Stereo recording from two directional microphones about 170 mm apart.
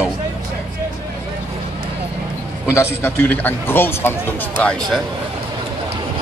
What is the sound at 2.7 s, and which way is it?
A man's voice, 15° left (ahead or behind).